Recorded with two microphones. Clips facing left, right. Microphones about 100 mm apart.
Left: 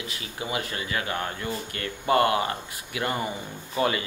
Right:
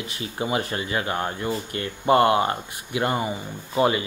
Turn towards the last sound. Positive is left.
turn(degrees=-25)  # may be behind; listen again after turning